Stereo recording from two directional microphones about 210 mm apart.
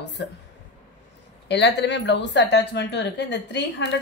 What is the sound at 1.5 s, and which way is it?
A woman's voice, 55° left (ahead or behind).